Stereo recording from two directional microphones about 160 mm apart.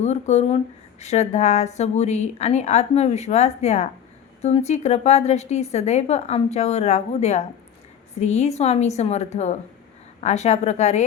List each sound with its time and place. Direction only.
0.0 s speech: 45° left (ahead or behind)